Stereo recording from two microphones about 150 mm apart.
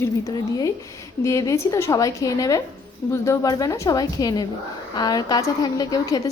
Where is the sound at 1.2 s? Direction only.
20° left (ahead or behind).